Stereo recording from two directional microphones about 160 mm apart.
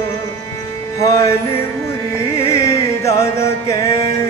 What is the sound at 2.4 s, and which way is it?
Music, 15° left (ahead or behind).